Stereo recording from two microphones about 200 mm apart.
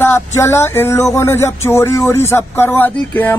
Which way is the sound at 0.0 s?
15° left (ahead or behind).